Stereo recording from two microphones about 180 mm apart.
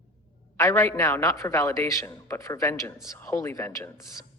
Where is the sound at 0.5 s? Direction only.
15° left (ahead or behind).